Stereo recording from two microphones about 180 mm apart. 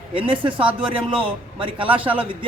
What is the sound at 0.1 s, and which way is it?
Speech, 30° right (ahead or behind).